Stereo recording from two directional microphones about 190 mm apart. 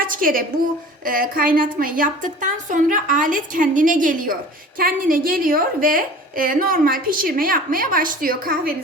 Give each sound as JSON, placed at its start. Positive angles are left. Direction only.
{"t": 0.0, "sound": "a woman's voice", "side_deg": -45}